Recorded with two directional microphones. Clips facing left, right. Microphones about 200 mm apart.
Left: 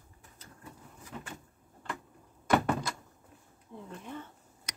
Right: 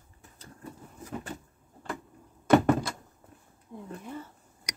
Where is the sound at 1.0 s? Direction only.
35° right (ahead or behind).